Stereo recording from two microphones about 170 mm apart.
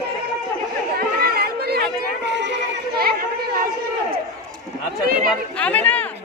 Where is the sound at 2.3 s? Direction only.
90° right; by 3.7 s 60° right (ahead or behind).